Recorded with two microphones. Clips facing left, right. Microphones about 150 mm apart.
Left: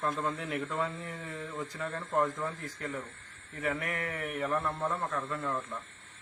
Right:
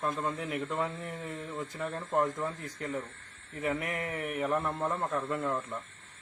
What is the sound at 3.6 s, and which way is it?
Speech, 20° right (ahead or behind).